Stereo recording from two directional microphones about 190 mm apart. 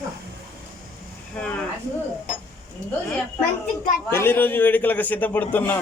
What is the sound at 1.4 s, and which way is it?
Speech, 5° left (ahead or behind).